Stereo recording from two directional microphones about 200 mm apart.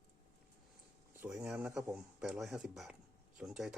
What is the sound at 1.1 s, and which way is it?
Speech, 5° right (ahead or behind).